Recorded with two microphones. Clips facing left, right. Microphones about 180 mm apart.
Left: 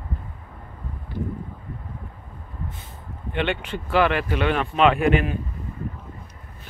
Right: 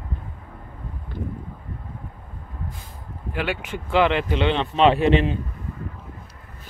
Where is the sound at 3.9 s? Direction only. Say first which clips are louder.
Right 1 dB; 20° right (ahead or behind).